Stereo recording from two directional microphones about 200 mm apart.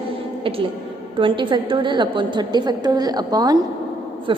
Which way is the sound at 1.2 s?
25° right (ahead or behind).